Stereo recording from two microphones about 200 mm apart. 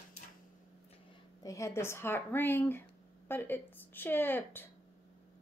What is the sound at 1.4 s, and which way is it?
Speech, 15° left (ahead or behind).